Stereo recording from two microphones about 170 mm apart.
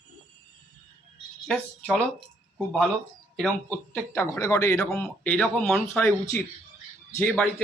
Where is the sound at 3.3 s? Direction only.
5° left (ahead or behind).